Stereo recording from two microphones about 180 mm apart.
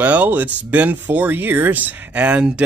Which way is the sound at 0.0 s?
10° right (ahead or behind).